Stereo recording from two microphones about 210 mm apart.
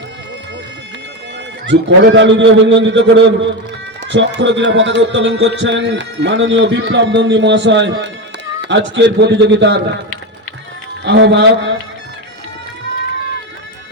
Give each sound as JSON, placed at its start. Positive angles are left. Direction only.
{"t": 1.6, "sound": "speech", "side_deg": -55}
{"t": 11.0, "sound": "speech", "side_deg": -60}